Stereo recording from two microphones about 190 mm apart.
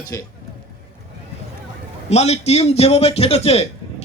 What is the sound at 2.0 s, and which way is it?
A man's voice, 35° left (ahead or behind).